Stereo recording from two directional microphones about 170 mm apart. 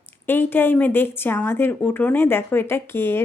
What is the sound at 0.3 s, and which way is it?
Speech, 10° left (ahead or behind).